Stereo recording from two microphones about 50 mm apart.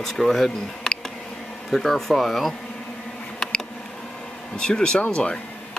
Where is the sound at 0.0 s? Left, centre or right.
Centre.